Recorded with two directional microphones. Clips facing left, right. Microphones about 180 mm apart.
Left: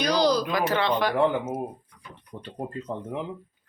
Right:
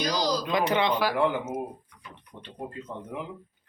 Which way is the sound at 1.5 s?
40° left (ahead or behind).